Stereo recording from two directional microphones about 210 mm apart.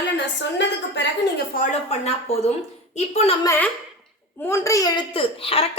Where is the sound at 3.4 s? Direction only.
15° left (ahead or behind).